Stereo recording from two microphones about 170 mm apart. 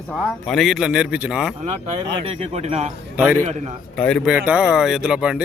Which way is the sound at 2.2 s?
40° right (ahead or behind).